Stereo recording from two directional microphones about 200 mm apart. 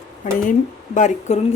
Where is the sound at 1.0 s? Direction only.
35° left (ahead or behind).